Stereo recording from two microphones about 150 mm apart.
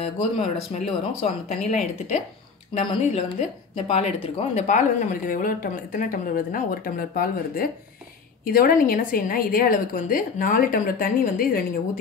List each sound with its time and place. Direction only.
0.0 s a woman's voice: 50° left (ahead or behind)
2.7 s a woman's voice: 45° left (ahead or behind); by 11.6 s 70° left (ahead or behind)